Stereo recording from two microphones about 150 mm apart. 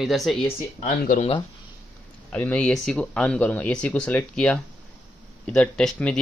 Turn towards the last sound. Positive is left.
turn(degrees=5)  # may be behind; listen again after turning